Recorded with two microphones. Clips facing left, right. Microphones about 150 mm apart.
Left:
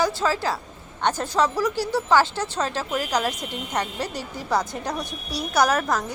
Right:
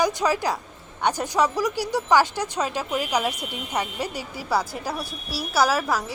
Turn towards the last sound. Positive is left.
turn(degrees=-5)  # may be behind; listen again after turning